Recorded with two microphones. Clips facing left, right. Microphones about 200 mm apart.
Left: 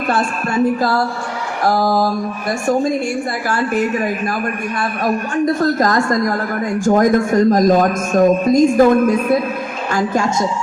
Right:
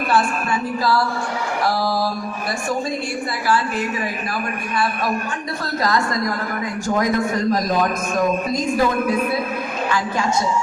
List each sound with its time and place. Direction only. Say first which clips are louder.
0.5 s a man's voice: left 6 dB; 50° left (ahead or behind)
3.5 s a man's voice: left 4 dB; 50° left (ahead or behind)
5.5 s a man's voice: left 6 dB; 45° left (ahead or behind)